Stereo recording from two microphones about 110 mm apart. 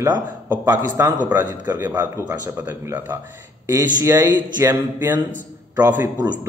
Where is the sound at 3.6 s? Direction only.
30° right (ahead or behind).